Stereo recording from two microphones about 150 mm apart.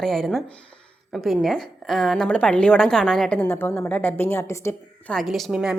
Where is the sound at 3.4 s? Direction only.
15° left (ahead or behind).